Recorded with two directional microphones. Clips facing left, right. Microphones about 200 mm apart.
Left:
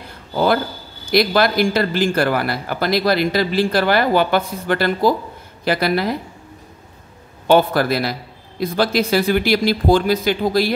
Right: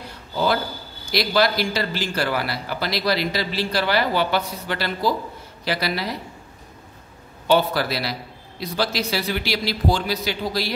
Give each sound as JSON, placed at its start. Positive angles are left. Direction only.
{"t": 1.1, "sound": "speech", "side_deg": 55}
{"t": 7.4, "sound": "speech", "side_deg": 50}